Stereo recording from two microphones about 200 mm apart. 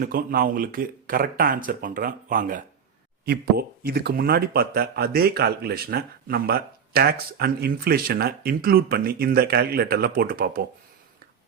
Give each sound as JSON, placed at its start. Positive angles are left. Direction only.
{"t": 0.0, "sound": "speech", "side_deg": -45}